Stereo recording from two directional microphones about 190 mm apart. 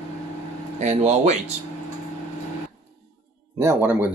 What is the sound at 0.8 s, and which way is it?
Speech, 35° right (ahead or behind).